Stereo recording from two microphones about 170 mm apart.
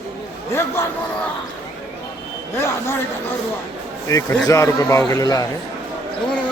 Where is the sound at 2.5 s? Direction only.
15° left (ahead or behind).